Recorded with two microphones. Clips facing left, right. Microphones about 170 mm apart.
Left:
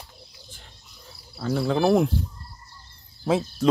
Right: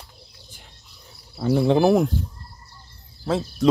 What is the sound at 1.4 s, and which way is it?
Speech, 20° right (ahead or behind).